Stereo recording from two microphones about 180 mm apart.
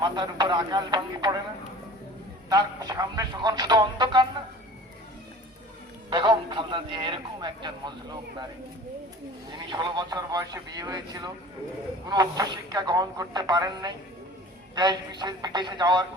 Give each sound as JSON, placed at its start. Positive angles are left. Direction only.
{"t": 0.0, "sound": "speech", "side_deg": -25}
{"t": 2.5, "sound": "speech", "side_deg": -20}
{"t": 6.1, "sound": "speech", "side_deg": -25}
{"t": 9.6, "sound": "speech", "side_deg": -25}